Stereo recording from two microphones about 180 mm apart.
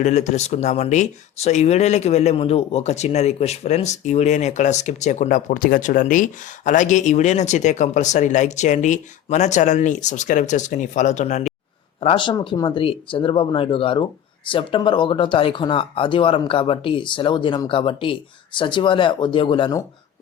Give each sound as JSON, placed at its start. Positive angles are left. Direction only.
{"t": 0.0, "sound": "speech", "side_deg": 40}
{"t": 11.9, "sound": "speech", "side_deg": 30}